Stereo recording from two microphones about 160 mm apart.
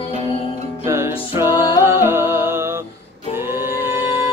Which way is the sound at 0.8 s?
15° right (ahead or behind).